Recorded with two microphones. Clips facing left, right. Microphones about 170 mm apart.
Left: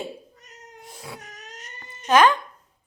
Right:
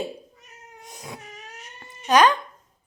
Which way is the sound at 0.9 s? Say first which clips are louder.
Right 1 dB; 20° right (ahead or behind).